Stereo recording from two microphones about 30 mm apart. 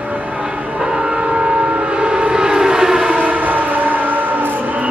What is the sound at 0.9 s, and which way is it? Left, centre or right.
Train, right.